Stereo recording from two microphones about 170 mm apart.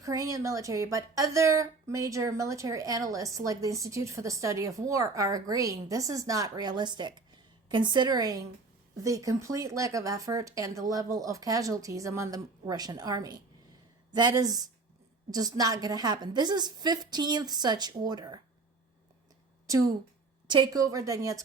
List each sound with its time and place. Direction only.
0.0 s a woman's voice: 20° right (ahead or behind)
19.6 s a woman's voice: 20° right (ahead or behind)